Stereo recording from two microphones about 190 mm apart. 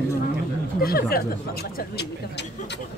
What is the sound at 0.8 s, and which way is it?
Speech, 55° left (ahead or behind).